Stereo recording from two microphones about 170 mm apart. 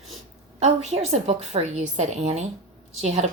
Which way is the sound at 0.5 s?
40° right (ahead or behind).